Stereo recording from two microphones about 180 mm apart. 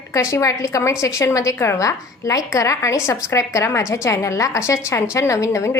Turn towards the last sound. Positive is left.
turn(degrees=15)  # may be behind; listen again after turning